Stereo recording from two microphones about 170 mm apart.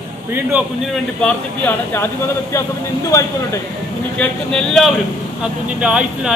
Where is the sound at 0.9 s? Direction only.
5° left (ahead or behind).